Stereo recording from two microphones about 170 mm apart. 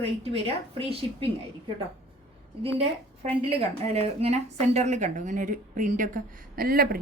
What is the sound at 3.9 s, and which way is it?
Speech, 40° right (ahead or behind).